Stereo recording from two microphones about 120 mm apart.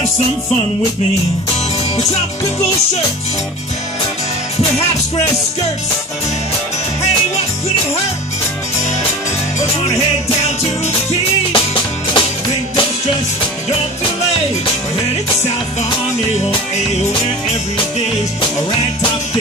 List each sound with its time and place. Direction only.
11.5 s music: 45° left (ahead or behind)